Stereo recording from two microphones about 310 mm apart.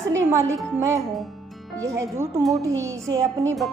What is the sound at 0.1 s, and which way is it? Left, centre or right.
Speech, centre.